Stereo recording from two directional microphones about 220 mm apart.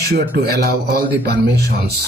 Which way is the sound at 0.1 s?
45° right (ahead or behind).